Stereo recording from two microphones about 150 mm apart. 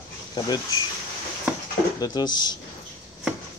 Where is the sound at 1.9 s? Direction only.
25° left (ahead or behind).